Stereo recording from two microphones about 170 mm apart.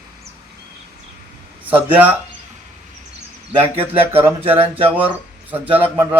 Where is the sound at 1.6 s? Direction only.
10° right (ahead or behind).